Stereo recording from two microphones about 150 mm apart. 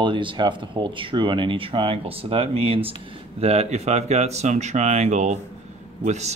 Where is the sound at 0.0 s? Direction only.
35° right (ahead or behind).